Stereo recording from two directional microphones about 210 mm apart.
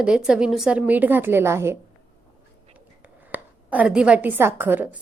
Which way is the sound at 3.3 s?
5° right (ahead or behind).